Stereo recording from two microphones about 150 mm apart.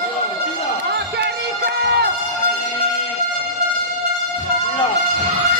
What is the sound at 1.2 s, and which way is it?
Music, 90° right.